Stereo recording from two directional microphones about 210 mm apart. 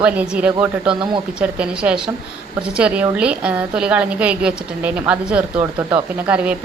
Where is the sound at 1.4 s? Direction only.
5° right (ahead or behind).